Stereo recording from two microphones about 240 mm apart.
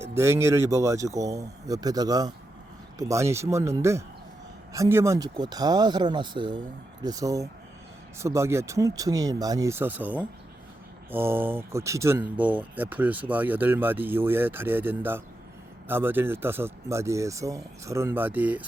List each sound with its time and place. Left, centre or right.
0.0 s speech: centre